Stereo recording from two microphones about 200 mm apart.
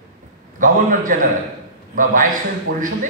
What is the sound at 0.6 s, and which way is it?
A man's voice, 40° right (ahead or behind).